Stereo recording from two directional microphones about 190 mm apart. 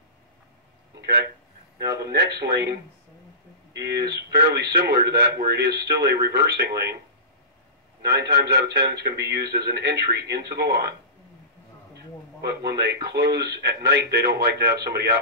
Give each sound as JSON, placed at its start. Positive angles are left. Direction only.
{"t": 2.0, "sound": "a man's voice", "side_deg": -55}
{"t": 8.0, "sound": "a man's voice", "side_deg": -55}